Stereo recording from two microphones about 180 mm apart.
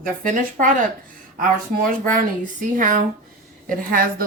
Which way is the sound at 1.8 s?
50° right (ahead or behind).